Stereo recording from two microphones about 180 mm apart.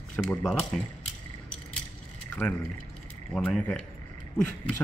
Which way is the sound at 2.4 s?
5° left (ahead or behind).